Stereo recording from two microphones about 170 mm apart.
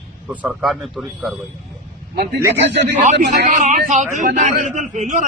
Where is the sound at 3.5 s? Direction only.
45° right (ahead or behind).